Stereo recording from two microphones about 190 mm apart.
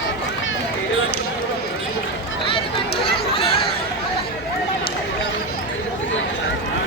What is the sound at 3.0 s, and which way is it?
Chatter, 30° left (ahead or behind).